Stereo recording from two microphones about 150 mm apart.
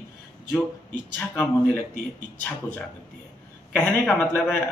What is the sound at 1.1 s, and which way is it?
Speech, 10° left (ahead or behind).